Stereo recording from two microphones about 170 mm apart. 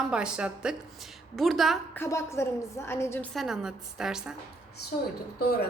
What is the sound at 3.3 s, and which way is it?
A woman's voice, centre (ahead or behind).